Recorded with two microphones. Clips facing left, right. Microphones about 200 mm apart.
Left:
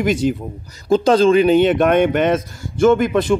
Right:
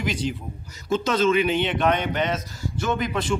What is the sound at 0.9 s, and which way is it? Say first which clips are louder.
Speech: left 8 dB; 35° left (ahead or behind).